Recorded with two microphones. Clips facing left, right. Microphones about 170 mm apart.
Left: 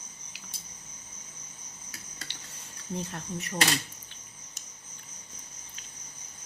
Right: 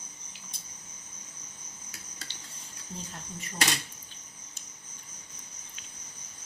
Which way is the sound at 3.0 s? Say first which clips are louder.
Left 5 dB; 70° left (ahead or behind).